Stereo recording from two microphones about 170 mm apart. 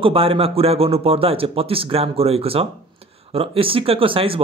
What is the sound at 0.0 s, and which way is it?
A man's voice, 35° right (ahead or behind).